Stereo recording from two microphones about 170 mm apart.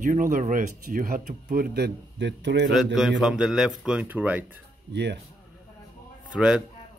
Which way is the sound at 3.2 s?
5° right (ahead or behind).